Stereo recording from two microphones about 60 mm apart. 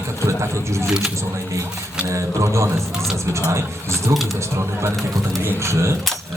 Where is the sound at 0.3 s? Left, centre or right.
Right.